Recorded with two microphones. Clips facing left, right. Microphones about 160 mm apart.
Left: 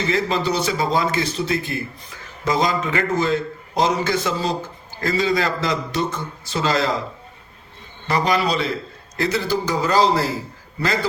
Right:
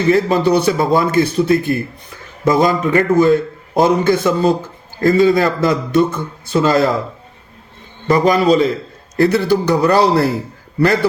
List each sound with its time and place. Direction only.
0.1 s a man's voice: 55° right (ahead or behind)
8.0 s a man's voice: 45° right (ahead or behind)
9.1 s a man's voice: 55° right (ahead or behind)